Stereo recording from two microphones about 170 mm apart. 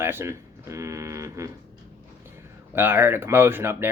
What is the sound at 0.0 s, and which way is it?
Speech, 15° right (ahead or behind).